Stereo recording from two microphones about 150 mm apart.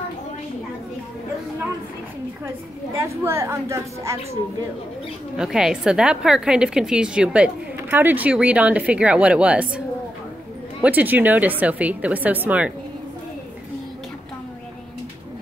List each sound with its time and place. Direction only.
3.0 s a woman's voice: 15° right (ahead or behind)
5.3 s a woman's voice: 5° right (ahead or behind)